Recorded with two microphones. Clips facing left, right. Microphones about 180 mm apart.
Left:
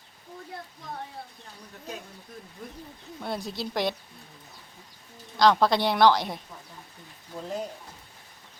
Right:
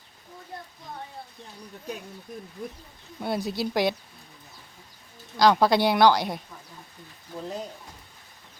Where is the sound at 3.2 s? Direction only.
5° right (ahead or behind).